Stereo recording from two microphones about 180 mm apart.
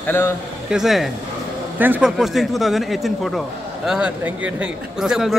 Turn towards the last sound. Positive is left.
turn(degrees=-5)  # may be behind; listen again after turning